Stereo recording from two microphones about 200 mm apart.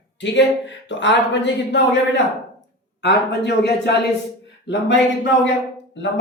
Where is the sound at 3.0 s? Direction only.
55° left (ahead or behind).